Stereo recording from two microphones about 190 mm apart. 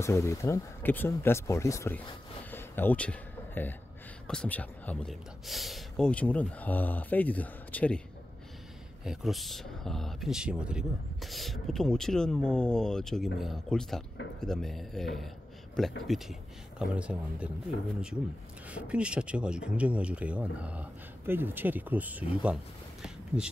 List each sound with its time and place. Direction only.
0.0 s speech: 15° left (ahead or behind)
2.5 s a sound: 10° left (ahead or behind)
4.3 s speech: 5° left (ahead or behind)
9.0 s speech: centre (ahead or behind)
17.7 s speech: 65° left (ahead or behind)
18.7 s speech: 5° right (ahead or behind)
23.0 s a sound: 5° right (ahead or behind)